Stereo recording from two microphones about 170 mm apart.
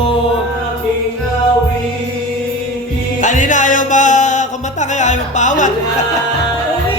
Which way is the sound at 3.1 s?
50° left (ahead or behind).